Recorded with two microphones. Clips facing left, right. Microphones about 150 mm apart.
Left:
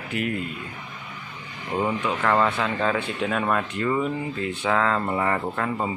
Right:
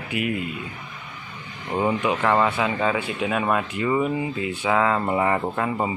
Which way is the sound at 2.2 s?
5° right (ahead or behind).